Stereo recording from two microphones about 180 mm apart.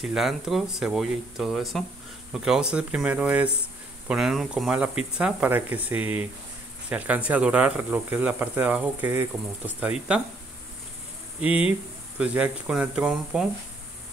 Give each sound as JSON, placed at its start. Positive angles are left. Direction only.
{"t": 0.0, "sound": "speech", "side_deg": 0}
{"t": 11.4, "sound": "speech", "side_deg": -10}